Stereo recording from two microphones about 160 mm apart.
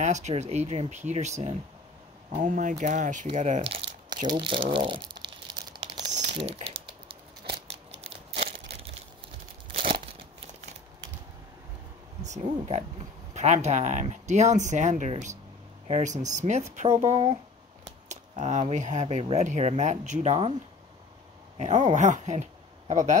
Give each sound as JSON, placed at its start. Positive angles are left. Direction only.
{"t": 0.0, "sound": "speech", "side_deg": -45}
{"t": 3.3, "sound": "a sound", "side_deg": -45}
{"t": 4.3, "sound": "crumpling", "side_deg": -30}
{"t": 6.1, "sound": "typing", "side_deg": -40}
{"t": 7.4, "sound": "a sound", "side_deg": -35}
{"t": 12.2, "sound": "speech", "side_deg": -45}
{"t": 21.5, "sound": "speech", "side_deg": -50}